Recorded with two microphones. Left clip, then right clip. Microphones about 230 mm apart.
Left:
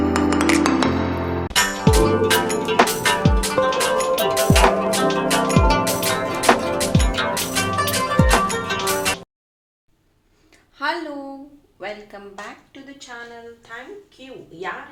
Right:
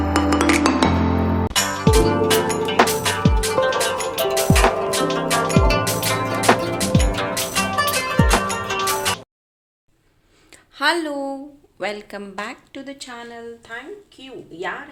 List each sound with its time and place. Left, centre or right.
0.1 s music: centre
10.5 s a sound: right
11.8 s speech: right